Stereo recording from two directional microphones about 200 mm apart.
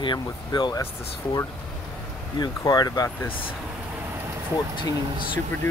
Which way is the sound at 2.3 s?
20° left (ahead or behind).